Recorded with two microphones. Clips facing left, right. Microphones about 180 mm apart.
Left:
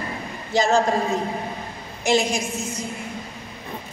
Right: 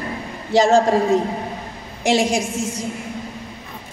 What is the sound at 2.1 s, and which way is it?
Speech, 90° right.